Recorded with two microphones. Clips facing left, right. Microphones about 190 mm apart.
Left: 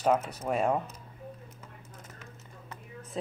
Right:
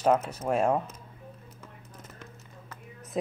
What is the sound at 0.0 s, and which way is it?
Speech, centre (ahead or behind).